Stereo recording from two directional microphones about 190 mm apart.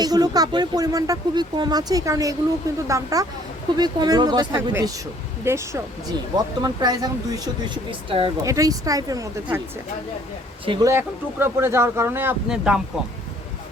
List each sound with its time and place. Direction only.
0.0 s speech: 20° right (ahead or behind)
10.7 s speech: 15° right (ahead or behind)